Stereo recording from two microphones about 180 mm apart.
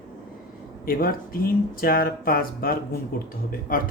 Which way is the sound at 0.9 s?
55° left (ahead or behind).